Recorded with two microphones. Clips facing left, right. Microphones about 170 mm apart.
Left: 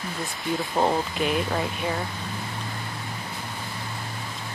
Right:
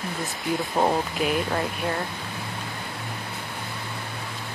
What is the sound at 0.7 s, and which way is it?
Speech, 5° right (ahead or behind).